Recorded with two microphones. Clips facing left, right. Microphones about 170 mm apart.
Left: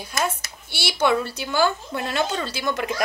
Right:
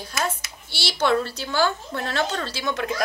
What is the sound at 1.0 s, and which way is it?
A woman's voice, 10° left (ahead or behind).